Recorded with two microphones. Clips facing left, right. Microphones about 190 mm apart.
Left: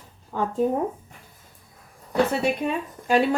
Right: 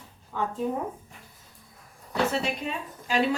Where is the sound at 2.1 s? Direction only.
55° left (ahead or behind).